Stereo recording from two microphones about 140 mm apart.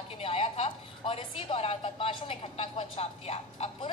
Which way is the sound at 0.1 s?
40° left (ahead or behind).